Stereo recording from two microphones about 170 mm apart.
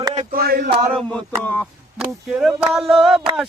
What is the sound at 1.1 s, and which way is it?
Speech, 5° left (ahead or behind).